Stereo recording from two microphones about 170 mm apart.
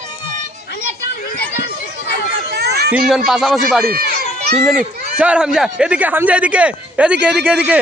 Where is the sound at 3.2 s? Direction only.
Centre (ahead or behind).